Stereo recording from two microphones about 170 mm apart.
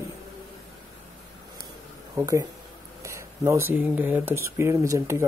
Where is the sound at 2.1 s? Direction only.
20° right (ahead or behind).